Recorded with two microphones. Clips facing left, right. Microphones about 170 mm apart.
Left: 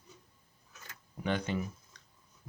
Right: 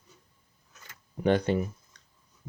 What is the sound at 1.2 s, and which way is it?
Speech, 35° right (ahead or behind).